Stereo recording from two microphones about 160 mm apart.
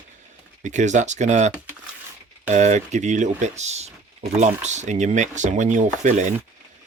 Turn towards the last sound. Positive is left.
turn(degrees=-50)  # may be behind; listen again after turning